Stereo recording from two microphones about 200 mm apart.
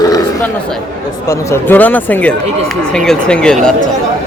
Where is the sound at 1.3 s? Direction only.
10° left (ahead or behind).